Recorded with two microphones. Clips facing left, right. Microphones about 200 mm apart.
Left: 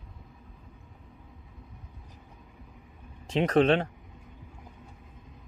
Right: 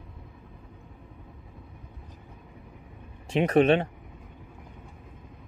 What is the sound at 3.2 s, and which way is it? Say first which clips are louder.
Speech: right 2 dB; 15° right (ahead or behind).